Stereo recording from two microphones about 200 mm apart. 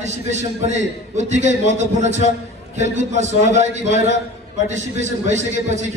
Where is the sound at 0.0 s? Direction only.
35° right (ahead or behind).